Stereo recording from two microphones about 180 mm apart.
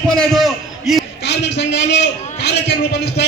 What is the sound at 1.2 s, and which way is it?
A man's voice, 70° left (ahead or behind).